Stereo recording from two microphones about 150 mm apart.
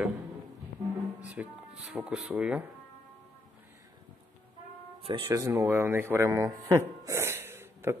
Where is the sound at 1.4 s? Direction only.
10° right (ahead or behind).